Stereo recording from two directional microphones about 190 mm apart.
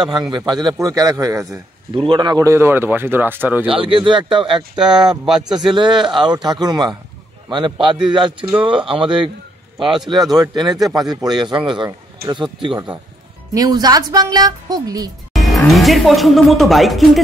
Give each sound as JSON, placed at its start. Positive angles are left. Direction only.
{"t": 0.3, "sound": "speech", "side_deg": -20}
{"t": 3.7, "sound": "speech", "side_deg": -25}
{"t": 4.7, "sound": "a man's voice", "side_deg": -5}
{"t": 5.7, "sound": "a man's voice", "side_deg": -25}
{"t": 15.3, "sound": "speech", "side_deg": 0}